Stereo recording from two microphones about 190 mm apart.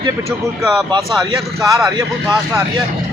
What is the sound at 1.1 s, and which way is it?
Speech, 15° right (ahead or behind).